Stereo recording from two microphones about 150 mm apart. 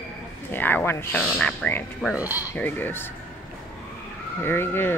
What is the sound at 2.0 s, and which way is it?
Speech, 10° right (ahead or behind).